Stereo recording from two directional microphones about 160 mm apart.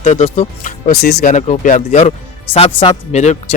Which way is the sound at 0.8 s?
75° left (ahead or behind).